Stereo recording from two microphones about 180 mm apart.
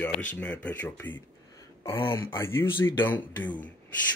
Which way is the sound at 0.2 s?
10° left (ahead or behind).